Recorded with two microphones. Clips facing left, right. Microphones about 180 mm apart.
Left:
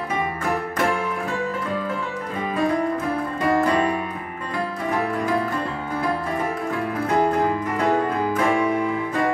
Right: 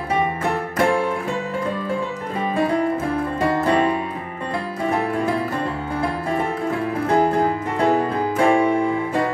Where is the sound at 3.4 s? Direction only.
30° right (ahead or behind).